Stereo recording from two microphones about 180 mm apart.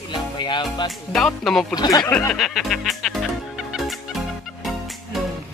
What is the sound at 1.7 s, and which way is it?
Speech, 20° left (ahead or behind).